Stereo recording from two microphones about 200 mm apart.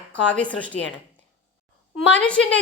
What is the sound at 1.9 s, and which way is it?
Speech, 5° left (ahead or behind).